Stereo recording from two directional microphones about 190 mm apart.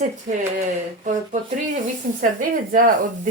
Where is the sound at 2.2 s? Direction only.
45° right (ahead or behind).